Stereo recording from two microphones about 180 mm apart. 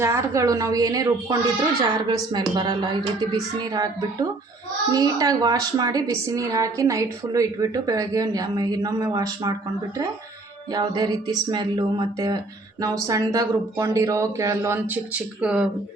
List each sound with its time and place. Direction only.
0.0 s a woman's voice: 15° right (ahead or behind)
10.7 s a woman's voice: 20° right (ahead or behind); by 15.7 s 5° right (ahead or behind)